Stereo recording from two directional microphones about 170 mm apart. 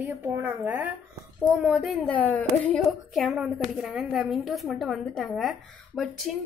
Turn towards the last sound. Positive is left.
turn(degrees=0)  # may be behind; listen again after turning